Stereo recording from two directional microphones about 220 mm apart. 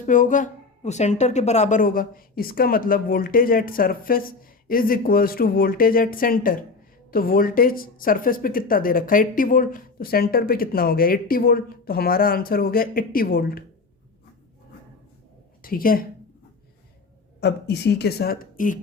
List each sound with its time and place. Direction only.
0.0 s a woman's voice: 35° left (ahead or behind)
15.6 s speech: 40° left (ahead or behind)
17.4 s a woman's voice: 50° left (ahead or behind)